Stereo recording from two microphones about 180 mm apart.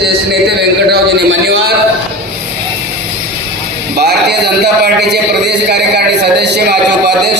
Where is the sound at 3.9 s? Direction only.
65° right (ahead or behind).